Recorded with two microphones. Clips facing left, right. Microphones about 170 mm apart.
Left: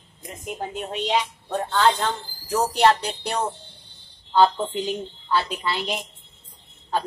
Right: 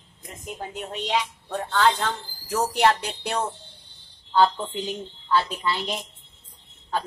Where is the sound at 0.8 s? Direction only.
25° left (ahead or behind).